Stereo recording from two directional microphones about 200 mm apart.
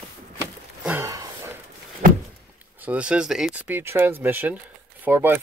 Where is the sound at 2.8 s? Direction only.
5° right (ahead or behind).